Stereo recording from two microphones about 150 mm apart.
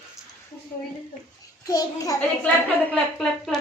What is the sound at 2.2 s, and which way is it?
A woman's voice, 10° left (ahead or behind).